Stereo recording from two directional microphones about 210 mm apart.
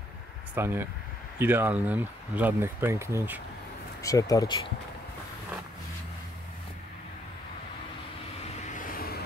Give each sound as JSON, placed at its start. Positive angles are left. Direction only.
{"t": 0.6, "sound": "speech", "side_deg": -10}
{"t": 4.0, "sound": "speech", "side_deg": 15}
{"t": 8.7, "sound": "vehicle", "side_deg": 40}